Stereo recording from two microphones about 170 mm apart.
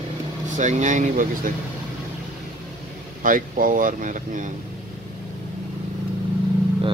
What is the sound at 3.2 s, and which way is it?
Speech, 55° right (ahead or behind).